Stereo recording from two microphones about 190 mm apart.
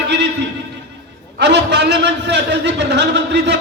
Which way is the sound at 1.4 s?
65° right (ahead or behind).